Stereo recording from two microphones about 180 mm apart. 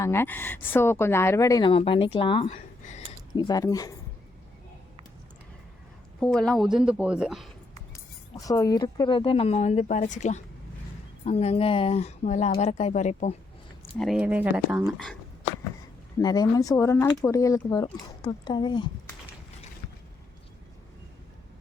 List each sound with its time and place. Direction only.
0.0 s speech: 15° left (ahead or behind)
1.7 s speech: 30° left (ahead or behind)
2.5 s a sound: 45° left (ahead or behind)
3.3 s speech: 25° left (ahead or behind)
6.1 s speech: 5° left (ahead or behind)
8.4 s speech: 20° left (ahead or behind); by 13.3 s 40° left (ahead or behind)
14.0 s speech: 5° right (ahead or behind)
16.1 s speech: 20° left (ahead or behind)